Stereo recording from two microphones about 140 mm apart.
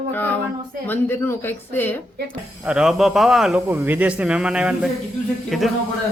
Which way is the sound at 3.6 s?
15° right (ahead or behind).